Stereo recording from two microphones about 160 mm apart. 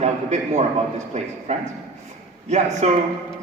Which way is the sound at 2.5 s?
45° right (ahead or behind).